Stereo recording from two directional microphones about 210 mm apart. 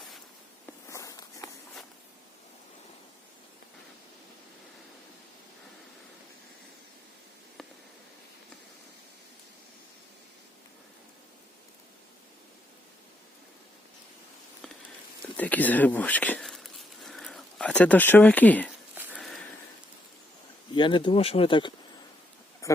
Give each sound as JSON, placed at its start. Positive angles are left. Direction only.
{"t": 0.9, "sound": "walk", "side_deg": 15}
{"t": 15.4, "sound": "speech", "side_deg": 5}
{"t": 18.9, "sound": "a sound", "side_deg": -5}
{"t": 20.7, "sound": "speech", "side_deg": 20}